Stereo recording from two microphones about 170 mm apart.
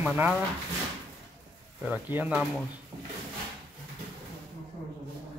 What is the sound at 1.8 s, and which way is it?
Speech, 10° right (ahead or behind).